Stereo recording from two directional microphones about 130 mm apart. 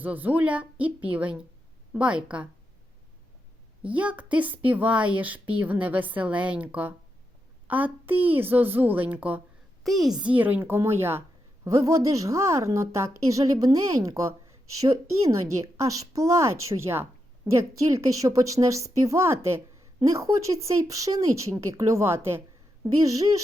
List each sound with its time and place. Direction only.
0.0 s a woman's voice: 15° right (ahead or behind)
3.8 s a woman's voice: 10° right (ahead or behind)
8.1 s a child's voice: 45° right (ahead or behind)
8.4 s a woman's voice: 15° right (ahead or behind)
9.8 s a woman's voice: centre (ahead or behind)
10.2 s a woman's voice: 10° right (ahead or behind)